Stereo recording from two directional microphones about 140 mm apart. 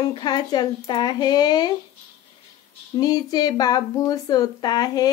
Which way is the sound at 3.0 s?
25° left (ahead or behind).